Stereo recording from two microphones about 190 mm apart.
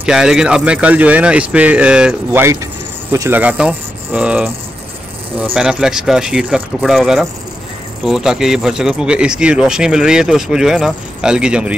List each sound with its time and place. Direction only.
0.0 s speech: 5° right (ahead or behind)